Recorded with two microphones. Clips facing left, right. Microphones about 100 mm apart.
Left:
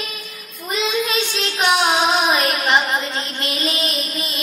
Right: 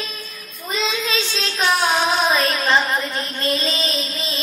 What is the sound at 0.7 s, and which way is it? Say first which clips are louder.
Child singing: left 2 dB; 15° left (ahead or behind).